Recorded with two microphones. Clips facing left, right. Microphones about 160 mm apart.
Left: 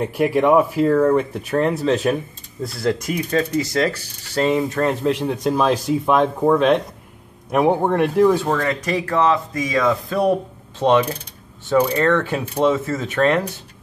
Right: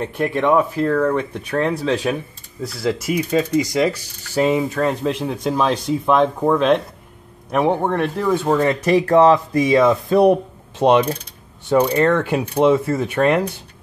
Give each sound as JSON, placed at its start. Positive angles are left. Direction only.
{"t": 0.0, "sound": "speech", "side_deg": 10}
{"t": 8.5, "sound": "speech", "side_deg": -30}